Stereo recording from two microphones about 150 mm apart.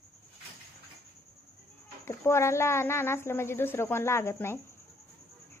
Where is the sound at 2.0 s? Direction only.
20° left (ahead or behind).